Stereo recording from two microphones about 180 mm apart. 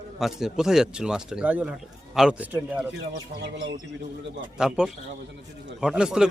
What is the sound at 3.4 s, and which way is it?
A man's voice, 75° right (ahead or behind).